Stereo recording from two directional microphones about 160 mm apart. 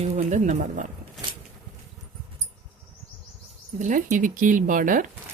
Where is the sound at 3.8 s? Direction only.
55° right (ahead or behind).